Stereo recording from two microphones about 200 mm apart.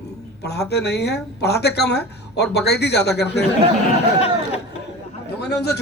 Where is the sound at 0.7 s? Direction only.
55° left (ahead or behind).